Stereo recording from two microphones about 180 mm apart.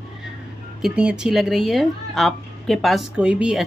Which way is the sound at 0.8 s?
5° right (ahead or behind).